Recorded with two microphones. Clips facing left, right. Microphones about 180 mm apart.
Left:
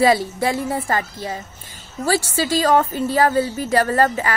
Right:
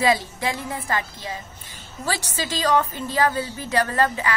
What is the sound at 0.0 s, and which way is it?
A woman's voice, 45° left (ahead or behind).